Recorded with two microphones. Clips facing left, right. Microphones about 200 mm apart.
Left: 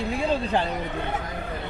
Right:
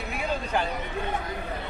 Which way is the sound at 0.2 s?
30° left (ahead or behind).